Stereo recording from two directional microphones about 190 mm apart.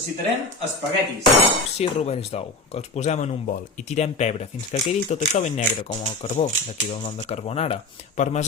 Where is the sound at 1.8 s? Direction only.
35° left (ahead or behind).